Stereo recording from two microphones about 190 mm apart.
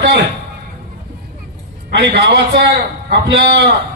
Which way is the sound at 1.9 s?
60° right (ahead or behind).